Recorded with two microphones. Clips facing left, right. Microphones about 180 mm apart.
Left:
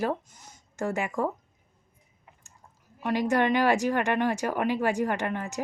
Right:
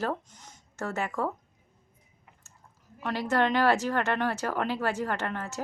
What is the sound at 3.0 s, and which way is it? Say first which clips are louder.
Speech: left 2 dB; 15° left (ahead or behind).